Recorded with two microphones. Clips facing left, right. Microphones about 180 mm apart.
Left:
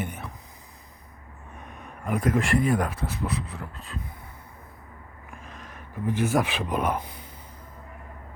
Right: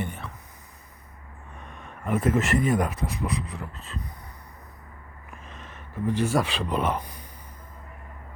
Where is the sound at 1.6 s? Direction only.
Centre (ahead or behind).